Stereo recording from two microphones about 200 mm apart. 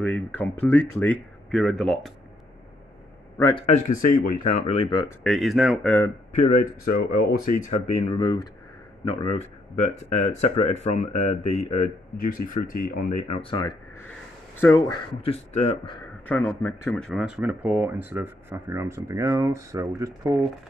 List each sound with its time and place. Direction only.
0.0 s speech: 10° left (ahead or behind)
3.3 s a man's voice: 15° left (ahead or behind)
3.6 s speech: 35° left (ahead or behind)
5.2 s speech: centre (ahead or behind)
6.3 s speech: 40° left (ahead or behind); by 13.7 s 25° left (ahead or behind)
15.2 s speech: 30° left (ahead or behind)
16.3 s speech: 5° left (ahead or behind); by 20.3 s 15° right (ahead or behind)